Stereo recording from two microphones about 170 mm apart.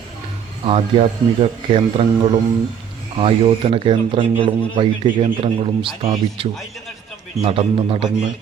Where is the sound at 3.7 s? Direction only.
30° right (ahead or behind).